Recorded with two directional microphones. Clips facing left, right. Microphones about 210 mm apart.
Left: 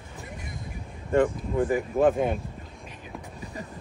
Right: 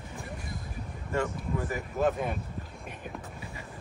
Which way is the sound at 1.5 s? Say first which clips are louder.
Left 10 dB; 30° left (ahead or behind).